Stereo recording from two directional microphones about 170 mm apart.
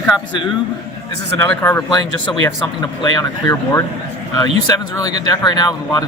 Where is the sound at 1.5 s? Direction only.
15° left (ahead or behind).